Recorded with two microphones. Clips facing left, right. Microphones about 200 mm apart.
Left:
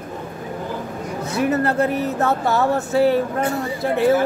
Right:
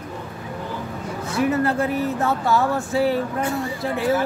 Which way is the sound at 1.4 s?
40° left (ahead or behind).